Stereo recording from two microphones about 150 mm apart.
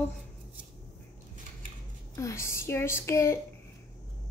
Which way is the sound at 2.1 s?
20° left (ahead or behind).